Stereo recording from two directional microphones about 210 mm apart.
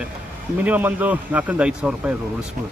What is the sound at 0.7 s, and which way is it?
A man's voice, 10° right (ahead or behind).